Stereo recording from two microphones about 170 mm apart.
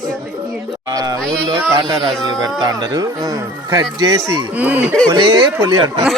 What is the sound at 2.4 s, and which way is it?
Speech, 20° right (ahead or behind).